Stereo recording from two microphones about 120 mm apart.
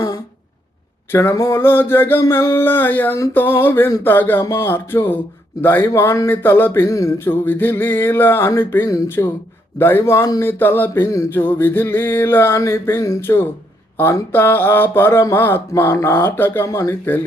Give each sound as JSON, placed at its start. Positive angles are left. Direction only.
{"t": 1.1, "sound": "speech", "side_deg": 20}